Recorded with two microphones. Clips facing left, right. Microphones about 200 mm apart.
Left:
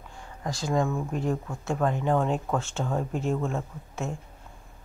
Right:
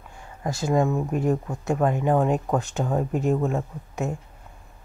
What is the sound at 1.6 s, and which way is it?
Speech, 20° right (ahead or behind).